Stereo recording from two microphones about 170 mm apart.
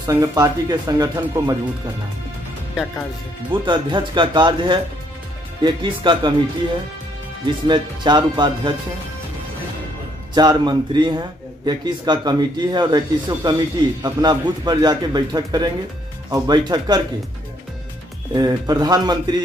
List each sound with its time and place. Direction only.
0.0 s a man's voice: 20° right (ahead or behind)
3.5 s a man's voice: 30° right (ahead or behind)
7.6 s a man's voice: 25° right (ahead or behind)
10.3 s a man's voice: 25° right (ahead or behind)
18.3 s a man's voice: 25° right (ahead or behind)